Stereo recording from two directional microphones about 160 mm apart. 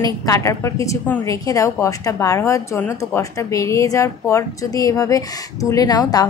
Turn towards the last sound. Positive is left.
turn(degrees=25)  # may be behind; listen again after turning